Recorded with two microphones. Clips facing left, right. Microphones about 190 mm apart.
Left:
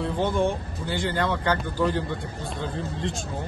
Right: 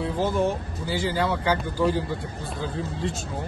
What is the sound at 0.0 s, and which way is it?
A man's voice, 5° right (ahead or behind).